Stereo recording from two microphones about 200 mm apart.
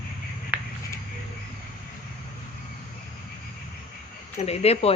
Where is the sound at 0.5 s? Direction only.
5° right (ahead or behind).